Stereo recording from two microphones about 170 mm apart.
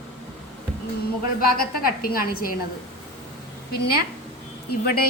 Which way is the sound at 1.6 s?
60° left (ahead or behind).